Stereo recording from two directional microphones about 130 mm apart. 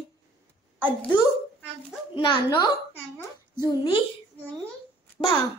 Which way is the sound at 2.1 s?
35° left (ahead or behind).